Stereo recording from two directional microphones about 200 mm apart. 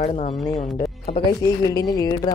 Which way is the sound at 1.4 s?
15° left (ahead or behind).